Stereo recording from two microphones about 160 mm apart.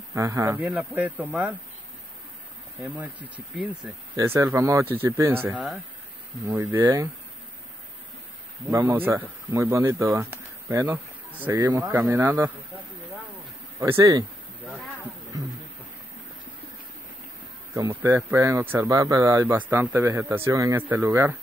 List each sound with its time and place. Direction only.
0.1 s speech: 15° right (ahead or behind)
2.8 s speech: 10° right (ahead or behind)
5.5 s speech: centre (ahead or behind)
6.4 s speech: 15° right (ahead or behind)
8.7 s speech: 15° right (ahead or behind)
13.7 s speech: 15° right (ahead or behind)
17.7 s speech: 20° right (ahead or behind)